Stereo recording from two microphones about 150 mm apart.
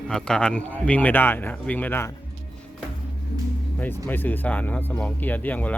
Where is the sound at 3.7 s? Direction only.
10° left (ahead or behind).